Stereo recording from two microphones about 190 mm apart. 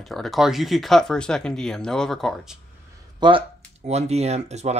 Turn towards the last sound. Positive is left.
turn(degrees=-35)  # may be behind; listen again after turning